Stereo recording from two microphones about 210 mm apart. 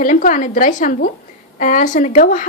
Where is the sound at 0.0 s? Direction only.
40° left (ahead or behind).